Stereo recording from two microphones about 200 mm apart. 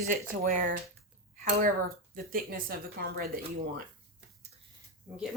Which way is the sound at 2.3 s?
45° right (ahead or behind).